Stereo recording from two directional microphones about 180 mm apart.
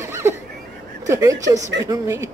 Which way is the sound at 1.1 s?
15° right (ahead or behind).